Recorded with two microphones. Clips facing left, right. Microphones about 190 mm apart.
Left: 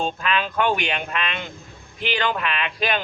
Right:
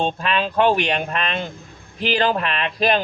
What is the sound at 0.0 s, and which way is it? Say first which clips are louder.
Speech: right 3 dB; 35° right (ahead or behind).